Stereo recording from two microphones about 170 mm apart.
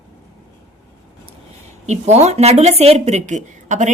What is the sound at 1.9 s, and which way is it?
A woman's voice, 40° right (ahead or behind).